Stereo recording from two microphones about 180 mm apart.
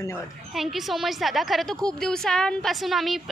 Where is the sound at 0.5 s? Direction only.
Centre (ahead or behind).